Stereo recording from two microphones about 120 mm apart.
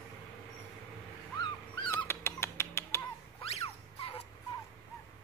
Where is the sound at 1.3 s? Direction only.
35° left (ahead or behind).